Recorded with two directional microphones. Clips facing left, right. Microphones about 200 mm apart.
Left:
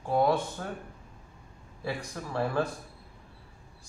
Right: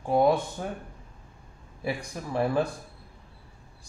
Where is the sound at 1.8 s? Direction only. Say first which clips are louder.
Right 3 dB; 15° right (ahead or behind).